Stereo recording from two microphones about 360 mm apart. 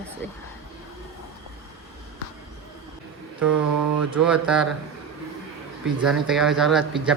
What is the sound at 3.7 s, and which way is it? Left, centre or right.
Speech, right.